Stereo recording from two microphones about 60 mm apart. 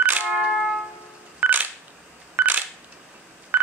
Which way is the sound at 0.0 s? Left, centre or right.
Right.